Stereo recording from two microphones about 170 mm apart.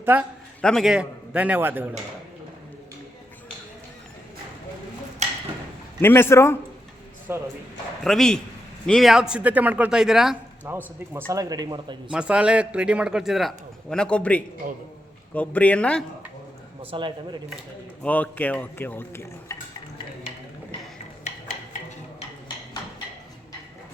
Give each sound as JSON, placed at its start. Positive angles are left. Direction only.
{"t": 0.0, "sound": "a man's voice", "side_deg": -10}
{"t": 0.6, "sound": "a man's voice", "side_deg": 0}
{"t": 6.0, "sound": "speech", "side_deg": 15}
{"t": 7.3, "sound": "a man's voice", "side_deg": -15}
{"t": 8.0, "sound": "a man's voice", "side_deg": 5}
{"t": 12.1, "sound": "a man's voice", "side_deg": -5}
{"t": 16.8, "sound": "a man's voice", "side_deg": -30}
{"t": 18.0, "sound": "speech", "side_deg": 10}